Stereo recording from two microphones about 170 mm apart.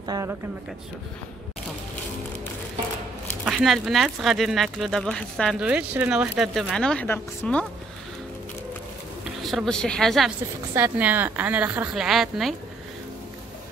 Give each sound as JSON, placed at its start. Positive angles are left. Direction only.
{"t": 0.0, "sound": "speech", "side_deg": -20}
{"t": 3.4, "sound": "speech", "side_deg": 0}
{"t": 9.4, "sound": "speech", "side_deg": 0}
{"t": 10.7, "sound": "a woman's voice", "side_deg": -10}